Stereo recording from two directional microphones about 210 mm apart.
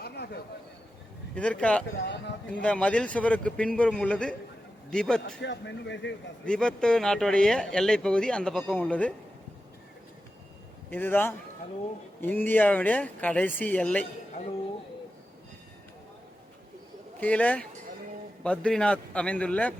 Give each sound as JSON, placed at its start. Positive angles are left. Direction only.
{"t": 0.0, "sound": "a sound", "side_deg": 50}
{"t": 1.4, "sound": "speech", "side_deg": 5}
{"t": 5.4, "sound": "speech", "side_deg": 55}
{"t": 6.4, "sound": "speech", "side_deg": 5}
{"t": 10.9, "sound": "speech", "side_deg": 10}
{"t": 17.2, "sound": "speech", "side_deg": 5}